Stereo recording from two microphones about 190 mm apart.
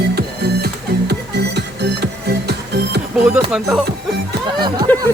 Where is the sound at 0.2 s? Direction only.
55° right (ahead or behind).